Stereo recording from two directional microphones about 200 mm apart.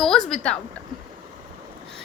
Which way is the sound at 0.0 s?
Centre (ahead or behind).